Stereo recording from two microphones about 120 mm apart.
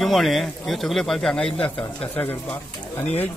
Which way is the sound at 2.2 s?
15° left (ahead or behind).